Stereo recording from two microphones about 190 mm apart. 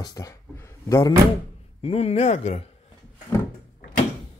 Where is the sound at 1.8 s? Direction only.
30° left (ahead or behind).